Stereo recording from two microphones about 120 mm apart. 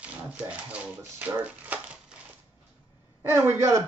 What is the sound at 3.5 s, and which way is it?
Speech, 25° right (ahead or behind).